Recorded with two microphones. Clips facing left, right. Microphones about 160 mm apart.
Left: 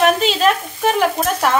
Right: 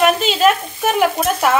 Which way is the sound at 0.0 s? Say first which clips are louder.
Right 1 dB; 5° right (ahead or behind).